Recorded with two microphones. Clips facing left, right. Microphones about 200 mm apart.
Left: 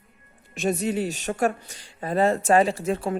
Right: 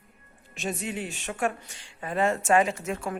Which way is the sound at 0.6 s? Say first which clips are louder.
Left 8 dB; 40° left (ahead or behind).